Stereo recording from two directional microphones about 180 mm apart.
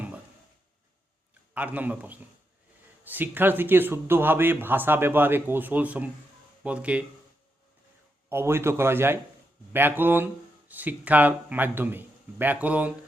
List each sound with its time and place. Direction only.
1.5 s a man's voice: 10° right (ahead or behind)
8.3 s a man's voice: 15° right (ahead or behind)